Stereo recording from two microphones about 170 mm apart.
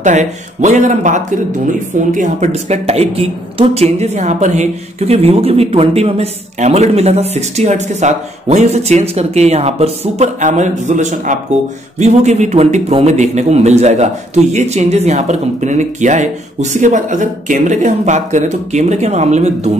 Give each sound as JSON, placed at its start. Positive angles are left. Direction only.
{"t": 0.0, "sound": "a man's voice", "side_deg": -45}